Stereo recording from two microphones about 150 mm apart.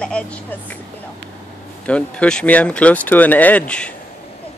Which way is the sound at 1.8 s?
5° left (ahead or behind).